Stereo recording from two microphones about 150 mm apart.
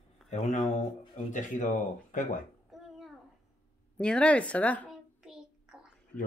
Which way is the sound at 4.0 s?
5° left (ahead or behind).